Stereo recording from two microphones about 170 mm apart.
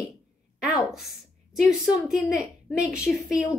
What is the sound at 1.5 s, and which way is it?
Speech, 5° right (ahead or behind).